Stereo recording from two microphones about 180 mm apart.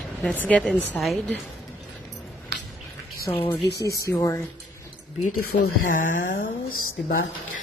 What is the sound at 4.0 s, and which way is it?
Speech, 15° left (ahead or behind).